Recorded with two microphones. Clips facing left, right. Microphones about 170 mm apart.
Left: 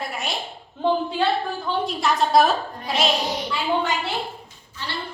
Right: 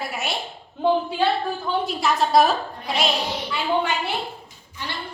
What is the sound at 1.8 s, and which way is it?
A woman's voice, centre (ahead or behind).